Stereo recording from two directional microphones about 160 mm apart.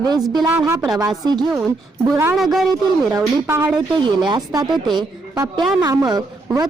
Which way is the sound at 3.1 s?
15° right (ahead or behind).